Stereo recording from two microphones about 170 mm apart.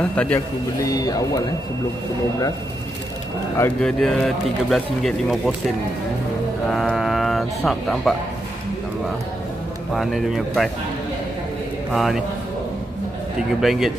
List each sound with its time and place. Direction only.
0.1 s speech: 5° left (ahead or behind)
0.8 s speech: 20° left (ahead or behind)
3.5 s speech: 15° left (ahead or behind)
4.0 s speech: centre (ahead or behind)
6.7 s speech: centre (ahead or behind)
9.9 s speech: centre (ahead or behind)
11.9 s speech: centre (ahead or behind)
13.6 s speech: centre (ahead or behind)